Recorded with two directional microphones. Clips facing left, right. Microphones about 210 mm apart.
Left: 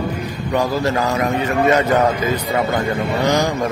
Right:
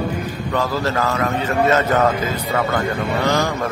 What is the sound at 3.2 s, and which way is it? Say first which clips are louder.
Speech: left 2 dB; 15° left (ahead or behind).